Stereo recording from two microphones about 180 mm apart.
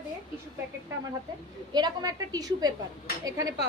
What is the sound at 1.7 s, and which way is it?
A woman's voice, 25° right (ahead or behind).